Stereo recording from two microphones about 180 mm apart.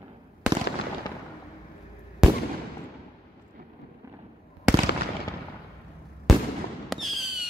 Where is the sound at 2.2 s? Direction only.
5° right (ahead or behind).